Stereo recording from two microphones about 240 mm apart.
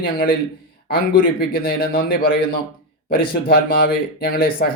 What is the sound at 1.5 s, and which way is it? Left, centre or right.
Speech, left.